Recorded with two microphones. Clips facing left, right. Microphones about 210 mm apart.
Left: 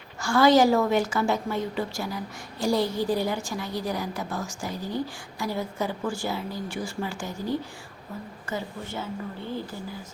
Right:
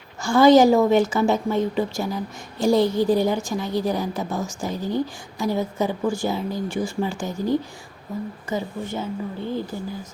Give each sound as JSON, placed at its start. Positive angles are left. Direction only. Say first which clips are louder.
{"t": 0.2, "sound": "a woman's voice", "louder": "right 5 dB", "side_deg": -20}